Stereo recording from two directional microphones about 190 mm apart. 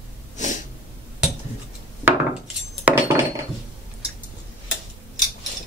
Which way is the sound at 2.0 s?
5° right (ahead or behind).